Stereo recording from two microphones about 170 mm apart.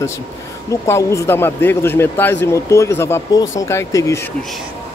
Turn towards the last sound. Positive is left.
turn(degrees=15)  # may be behind; listen again after turning